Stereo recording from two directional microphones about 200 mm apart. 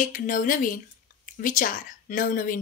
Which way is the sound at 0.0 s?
40° left (ahead or behind).